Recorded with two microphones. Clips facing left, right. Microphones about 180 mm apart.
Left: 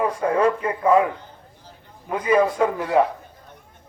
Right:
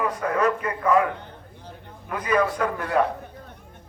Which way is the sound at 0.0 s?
30° left (ahead or behind).